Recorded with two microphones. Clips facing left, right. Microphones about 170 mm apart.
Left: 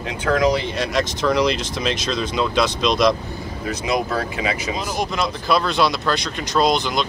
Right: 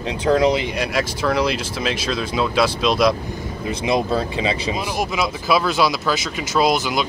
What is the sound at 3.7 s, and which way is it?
Speech, 25° right (ahead or behind).